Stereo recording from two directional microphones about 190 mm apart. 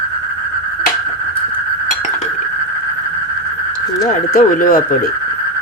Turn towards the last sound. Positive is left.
turn(degrees=45)  # may be behind; listen again after turning